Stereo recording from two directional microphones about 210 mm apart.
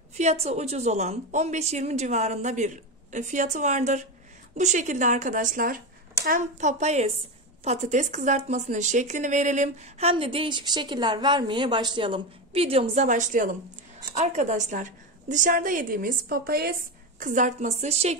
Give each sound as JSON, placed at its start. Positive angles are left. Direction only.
{"t": 0.1, "sound": "speech", "side_deg": -30}